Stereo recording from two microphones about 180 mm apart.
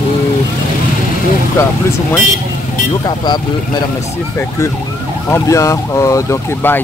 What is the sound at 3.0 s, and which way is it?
Speech, 25° left (ahead or behind).